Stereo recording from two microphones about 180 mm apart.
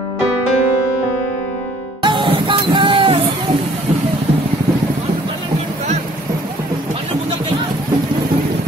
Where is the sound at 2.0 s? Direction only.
25° right (ahead or behind).